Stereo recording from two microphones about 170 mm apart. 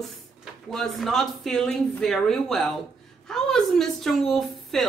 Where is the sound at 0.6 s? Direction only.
Centre (ahead or behind).